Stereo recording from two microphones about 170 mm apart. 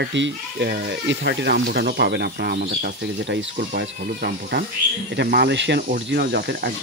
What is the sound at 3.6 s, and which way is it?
Speech, 55° right (ahead or behind).